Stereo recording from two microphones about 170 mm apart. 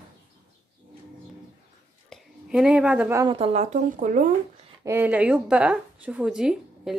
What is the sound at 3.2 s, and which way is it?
Speech, 35° right (ahead or behind).